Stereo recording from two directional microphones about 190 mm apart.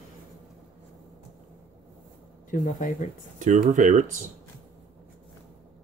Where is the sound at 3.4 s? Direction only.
40° right (ahead or behind).